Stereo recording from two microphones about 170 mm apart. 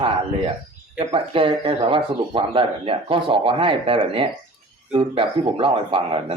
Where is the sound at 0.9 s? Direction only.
30° right (ahead or behind).